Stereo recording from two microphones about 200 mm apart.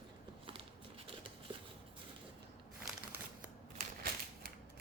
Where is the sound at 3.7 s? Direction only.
50° right (ahead or behind).